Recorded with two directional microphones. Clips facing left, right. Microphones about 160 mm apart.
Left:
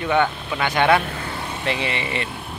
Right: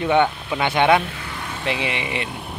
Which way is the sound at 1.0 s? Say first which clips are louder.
Left 3 dB; 45° left (ahead or behind).